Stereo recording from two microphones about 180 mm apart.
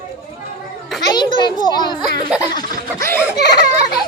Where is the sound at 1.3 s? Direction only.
25° left (ahead or behind).